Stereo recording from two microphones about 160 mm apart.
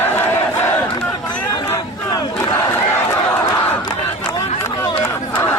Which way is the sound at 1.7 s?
25° left (ahead or behind).